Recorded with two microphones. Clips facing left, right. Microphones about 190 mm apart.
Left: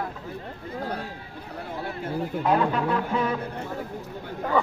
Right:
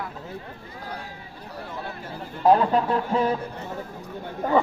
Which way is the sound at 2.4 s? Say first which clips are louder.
Right 5 dB; 35° right (ahead or behind).